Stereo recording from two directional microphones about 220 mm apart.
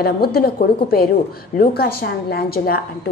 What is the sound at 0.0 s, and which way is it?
A woman's voice, 45° left (ahead or behind).